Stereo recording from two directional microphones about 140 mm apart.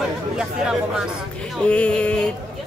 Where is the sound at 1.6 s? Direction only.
10° left (ahead or behind).